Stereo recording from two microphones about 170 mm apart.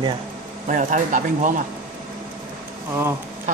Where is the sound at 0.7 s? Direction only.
50° right (ahead or behind).